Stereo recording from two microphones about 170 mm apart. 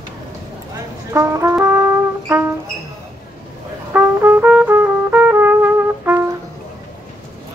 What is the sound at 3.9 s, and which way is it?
Brass instrument, 10° right (ahead or behind).